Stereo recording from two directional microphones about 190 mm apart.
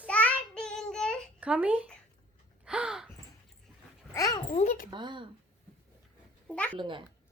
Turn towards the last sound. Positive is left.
turn(degrees=-25)  # may be behind; listen again after turning